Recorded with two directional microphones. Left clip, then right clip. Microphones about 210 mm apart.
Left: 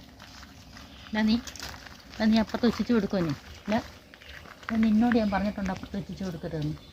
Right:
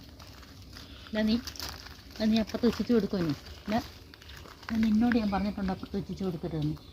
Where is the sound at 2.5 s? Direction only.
35° left (ahead or behind).